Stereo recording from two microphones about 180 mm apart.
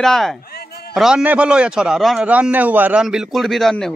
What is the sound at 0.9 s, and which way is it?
A man's voice, 5° right (ahead or behind).